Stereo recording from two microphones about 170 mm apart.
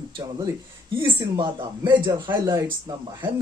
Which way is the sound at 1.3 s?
25° right (ahead or behind).